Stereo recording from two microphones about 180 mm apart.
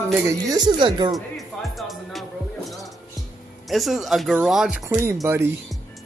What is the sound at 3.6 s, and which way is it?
Speech, centre (ahead or behind).